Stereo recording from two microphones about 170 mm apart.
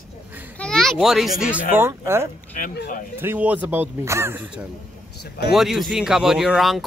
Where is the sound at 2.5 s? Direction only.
55° left (ahead or behind).